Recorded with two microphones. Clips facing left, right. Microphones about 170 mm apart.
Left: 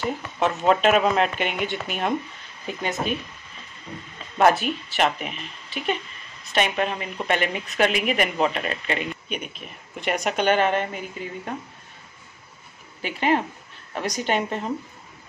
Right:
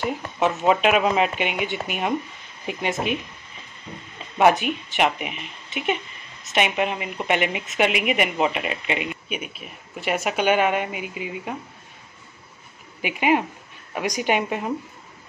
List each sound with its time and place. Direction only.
0.4 s speech: centre (ahead or behind); by 3.0 s 20° right (ahead or behind)
4.4 s speech: 10° right (ahead or behind)
6.5 s speech: 15° right (ahead or behind)
13.0 s speech: 10° right (ahead or behind)